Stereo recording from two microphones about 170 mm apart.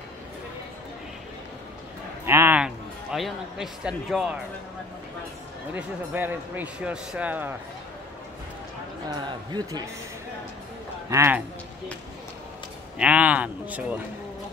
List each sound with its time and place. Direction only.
2.2 s speech: 15° right (ahead or behind)
5.8 s speech: 10° right (ahead or behind)
9.1 s speech: 25° right (ahead or behind)
11.1 s speech: 15° right (ahead or behind)
13.0 s speech: 10° right (ahead or behind)